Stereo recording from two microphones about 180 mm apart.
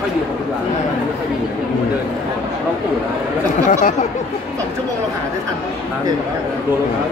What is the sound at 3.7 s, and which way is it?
Speech, 45° left (ahead or behind).